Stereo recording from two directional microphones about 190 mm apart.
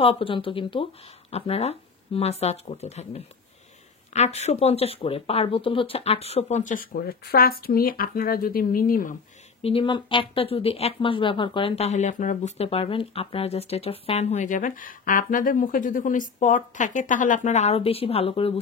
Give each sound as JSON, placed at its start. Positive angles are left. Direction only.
{"t": 0.0, "sound": "speech", "side_deg": 30}
{"t": 9.6, "sound": "speech", "side_deg": 30}